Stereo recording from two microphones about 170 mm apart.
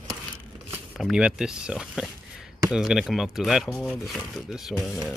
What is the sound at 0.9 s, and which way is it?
Speech, 5° right (ahead or behind).